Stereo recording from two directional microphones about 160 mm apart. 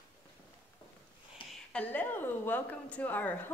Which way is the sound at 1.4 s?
35° left (ahead or behind).